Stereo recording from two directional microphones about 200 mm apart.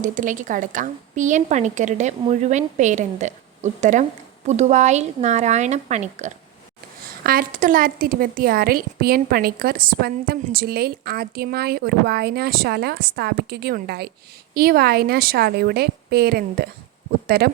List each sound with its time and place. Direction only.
0.0 s a woman's voice: 40° right (ahead or behind)